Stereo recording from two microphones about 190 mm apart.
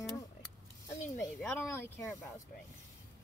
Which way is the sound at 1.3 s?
10° left (ahead or behind).